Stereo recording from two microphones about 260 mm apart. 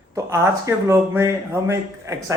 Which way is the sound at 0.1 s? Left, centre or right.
Centre.